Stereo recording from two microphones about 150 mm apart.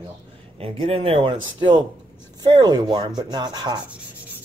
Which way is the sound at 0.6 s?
40° right (ahead or behind).